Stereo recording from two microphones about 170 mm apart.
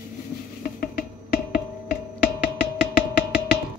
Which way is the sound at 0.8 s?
60° left (ahead or behind).